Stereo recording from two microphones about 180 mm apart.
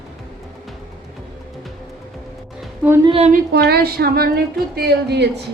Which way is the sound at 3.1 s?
35° right (ahead or behind).